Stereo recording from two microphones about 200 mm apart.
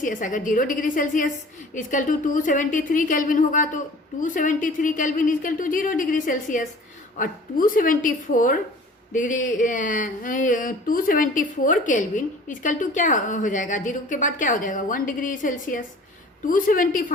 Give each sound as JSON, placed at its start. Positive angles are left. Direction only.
{"t": 0.0, "sound": "a woman's voice", "side_deg": 40}